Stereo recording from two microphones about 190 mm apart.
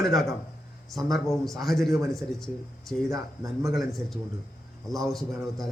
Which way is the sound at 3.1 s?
15° right (ahead or behind).